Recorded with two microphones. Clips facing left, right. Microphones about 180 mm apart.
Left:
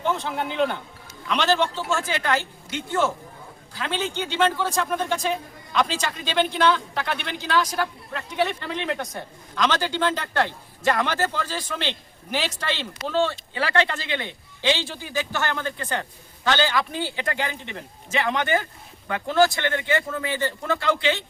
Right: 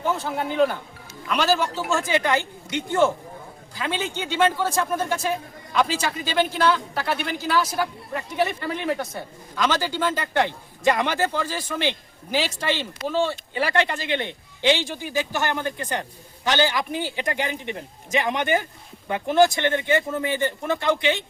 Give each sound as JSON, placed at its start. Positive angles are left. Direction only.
{"t": 0.0, "sound": "a man's voice", "side_deg": -5}
{"t": 3.8, "sound": "a man's voice", "side_deg": -10}